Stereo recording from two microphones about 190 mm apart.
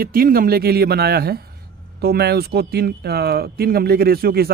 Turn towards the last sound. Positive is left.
turn(degrees=-55)  # may be behind; listen again after turning